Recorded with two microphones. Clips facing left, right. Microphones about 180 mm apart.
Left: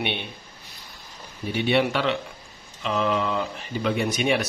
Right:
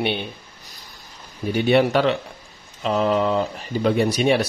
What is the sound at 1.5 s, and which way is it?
Speech, 45° right (ahead or behind).